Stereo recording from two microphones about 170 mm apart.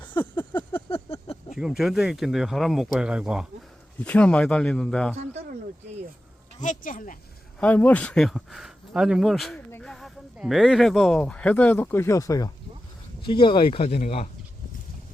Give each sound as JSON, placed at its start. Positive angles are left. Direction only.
{"t": 0.9, "sound": "a sound", "side_deg": 35}
{"t": 1.5, "sound": "speech", "side_deg": 0}
{"t": 4.0, "sound": "speech", "side_deg": 5}
{"t": 6.6, "sound": "speech", "side_deg": 50}
{"t": 7.6, "sound": "speech", "side_deg": 10}